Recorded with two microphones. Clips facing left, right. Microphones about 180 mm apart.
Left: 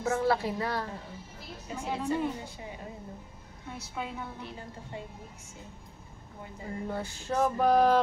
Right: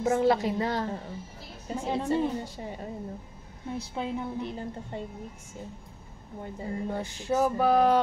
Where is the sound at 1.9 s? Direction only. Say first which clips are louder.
Right 3 dB; 35° right (ahead or behind).